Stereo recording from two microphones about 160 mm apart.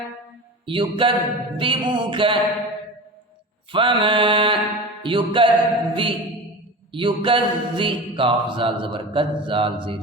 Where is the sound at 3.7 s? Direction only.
30° right (ahead or behind).